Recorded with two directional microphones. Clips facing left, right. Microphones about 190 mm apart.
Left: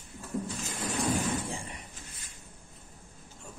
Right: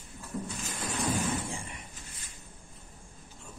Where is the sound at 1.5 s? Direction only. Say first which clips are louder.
Left 1 dB; 35° left (ahead or behind).